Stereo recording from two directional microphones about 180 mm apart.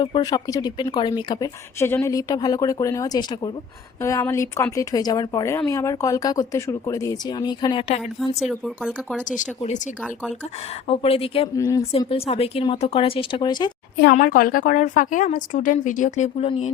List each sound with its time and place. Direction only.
0.0 s speech: 25° left (ahead or behind)
8.4 s speech: centre (ahead or behind)
9.3 s a woman's voice: 45° left (ahead or behind)
10.8 s speech: 30° left (ahead or behind)
11.5 s speech: 20° left (ahead or behind)
11.9 s speech: 30° left (ahead or behind)
14.0 s a woman's voice: 50° left (ahead or behind)